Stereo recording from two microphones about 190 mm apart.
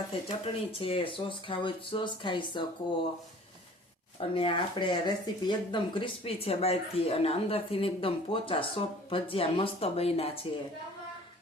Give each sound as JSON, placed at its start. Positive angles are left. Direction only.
{"t": 0.3, "sound": "speech", "side_deg": 30}
{"t": 4.2, "sound": "speech", "side_deg": 30}